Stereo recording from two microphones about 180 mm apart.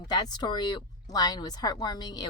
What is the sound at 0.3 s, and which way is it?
A woman's voice, 25° left (ahead or behind).